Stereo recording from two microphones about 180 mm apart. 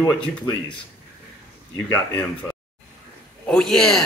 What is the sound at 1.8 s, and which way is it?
Speech, 15° left (ahead or behind).